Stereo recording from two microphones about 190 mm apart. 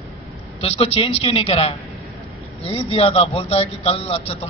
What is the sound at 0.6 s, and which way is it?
A man's voice, 30° left (ahead or behind).